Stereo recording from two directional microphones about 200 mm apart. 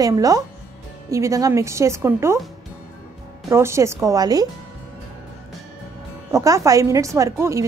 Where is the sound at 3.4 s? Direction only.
15° right (ahead or behind).